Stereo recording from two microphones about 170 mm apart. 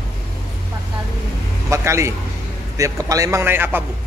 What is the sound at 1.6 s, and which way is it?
Speech, 15° right (ahead or behind).